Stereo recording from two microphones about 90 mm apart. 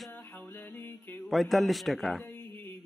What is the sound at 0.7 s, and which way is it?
Music, 20° left (ahead or behind).